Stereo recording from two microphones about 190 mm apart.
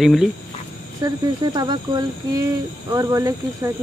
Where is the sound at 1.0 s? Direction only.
20° right (ahead or behind).